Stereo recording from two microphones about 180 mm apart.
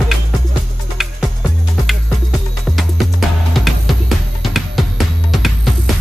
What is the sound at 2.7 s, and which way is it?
Music, centre (ahead or behind).